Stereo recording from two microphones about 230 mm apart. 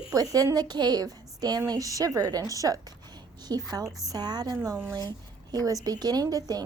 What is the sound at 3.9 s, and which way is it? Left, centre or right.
Speech, centre.